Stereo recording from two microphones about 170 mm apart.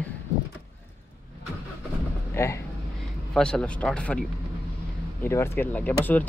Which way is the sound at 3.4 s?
5° left (ahead or behind).